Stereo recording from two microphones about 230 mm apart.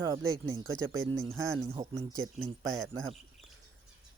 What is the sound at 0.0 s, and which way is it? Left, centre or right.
Speech, centre.